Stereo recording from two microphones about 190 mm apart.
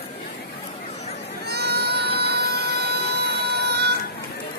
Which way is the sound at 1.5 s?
60° right (ahead or behind).